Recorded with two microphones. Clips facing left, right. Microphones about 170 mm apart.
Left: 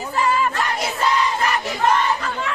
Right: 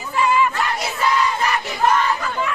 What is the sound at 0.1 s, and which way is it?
Battle cry, 40° left (ahead or behind).